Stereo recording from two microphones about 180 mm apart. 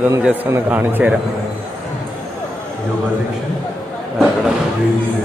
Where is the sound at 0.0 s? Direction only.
10° right (ahead or behind).